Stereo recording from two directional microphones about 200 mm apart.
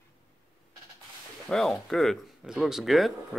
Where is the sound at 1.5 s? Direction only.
Centre (ahead or behind).